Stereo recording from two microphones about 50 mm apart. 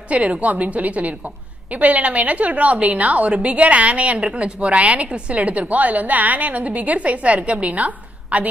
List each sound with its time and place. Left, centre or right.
0.1 s a woman's voice: right